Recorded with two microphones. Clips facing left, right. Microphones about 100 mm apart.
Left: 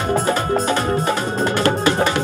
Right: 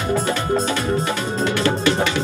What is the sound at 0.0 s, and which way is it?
Music, 40° left (ahead or behind).